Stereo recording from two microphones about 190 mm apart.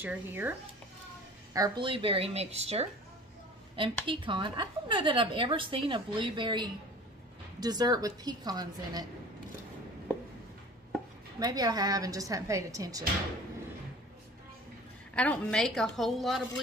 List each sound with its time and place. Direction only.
0.0 s speech: 10° right (ahead or behind)
1.5 s a woman's voice: 20° right (ahead or behind)
11.3 s a woman's voice: 20° right (ahead or behind)
15.1 s a woman's voice: 5° left (ahead or behind)